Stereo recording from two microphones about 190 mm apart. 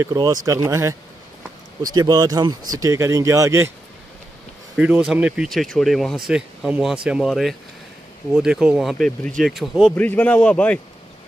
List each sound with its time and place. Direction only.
0.0 s speech: 20° right (ahead or behind)
2.0 s speech: 20° right (ahead or behind)
4.7 s speech: 5° right (ahead or behind)